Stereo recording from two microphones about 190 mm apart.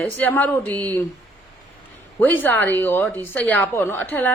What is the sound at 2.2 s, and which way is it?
A woman's voice, 10° left (ahead or behind).